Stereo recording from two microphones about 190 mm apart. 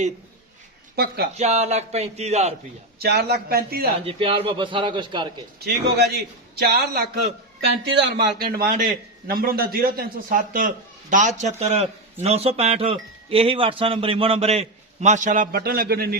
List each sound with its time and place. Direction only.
0.9 s a man's voice: 55° right (ahead or behind)
1.4 s wind chime: 35° right (ahead or behind)
3.0 s a man's voice: 55° right (ahead or behind)
4.0 s a man's voice: 30° right (ahead or behind)
5.5 s a man's voice: 60° right (ahead or behind)
11.1 s wind chime: 40° right (ahead or behind)